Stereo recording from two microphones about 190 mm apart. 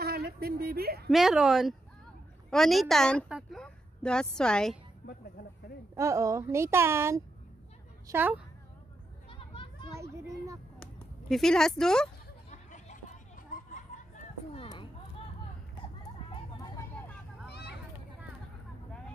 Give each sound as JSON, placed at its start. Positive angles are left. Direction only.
{"t": 0.0, "sound": "a sound", "side_deg": -55}
{"t": 1.0, "sound": "a woman's voice", "side_deg": 0}
{"t": 5.9, "sound": "a woman's voice", "side_deg": -15}
{"t": 9.3, "sound": "children playing", "side_deg": 25}
{"t": 9.9, "sound": "children playing", "side_deg": -15}
{"t": 10.8, "sound": "a sound", "side_deg": 0}
{"t": 12.4, "sound": "chatter", "side_deg": 40}
{"t": 14.6, "sound": "a sound", "side_deg": 25}
{"t": 17.5, "sound": "vehicle", "side_deg": 60}